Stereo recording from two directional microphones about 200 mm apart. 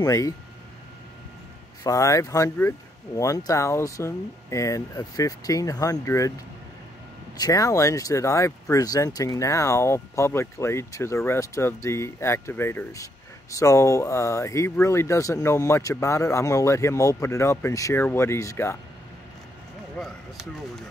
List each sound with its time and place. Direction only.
0.0 s speech: 15° left (ahead or behind)
1.8 s speech: 15° left (ahead or behind)
7.3 s speech: 15° left (ahead or behind)
20.0 s speech: centre (ahead or behind)